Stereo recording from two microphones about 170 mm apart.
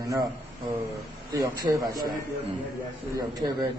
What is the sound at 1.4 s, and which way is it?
Speech, 25° right (ahead or behind).